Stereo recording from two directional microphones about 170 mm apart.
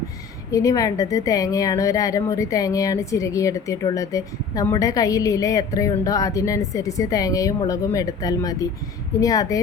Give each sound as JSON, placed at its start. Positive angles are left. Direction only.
{"t": 0.5, "sound": "a woman's voice", "side_deg": 20}